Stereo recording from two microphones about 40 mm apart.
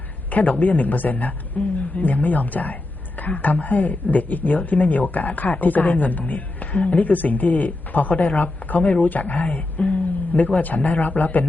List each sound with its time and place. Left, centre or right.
0.3 s a woman's voice: left
10.0 s a sound: left
10.6 s a woman's voice: left